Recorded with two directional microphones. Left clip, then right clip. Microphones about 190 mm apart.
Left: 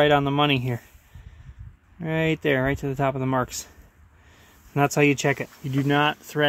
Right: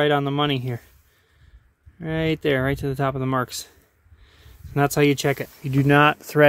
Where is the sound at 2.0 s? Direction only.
15° right (ahead or behind).